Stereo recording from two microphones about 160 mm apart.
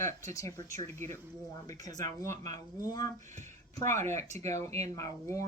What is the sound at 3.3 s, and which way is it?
Speech, 50° right (ahead or behind).